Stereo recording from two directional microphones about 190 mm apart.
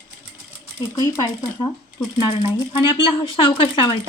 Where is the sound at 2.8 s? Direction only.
25° left (ahead or behind).